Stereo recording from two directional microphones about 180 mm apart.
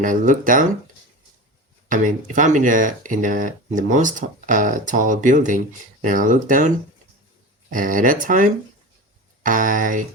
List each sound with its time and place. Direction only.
0.0 s speech: 45° right (ahead or behind)
1.9 s speech: 45° right (ahead or behind)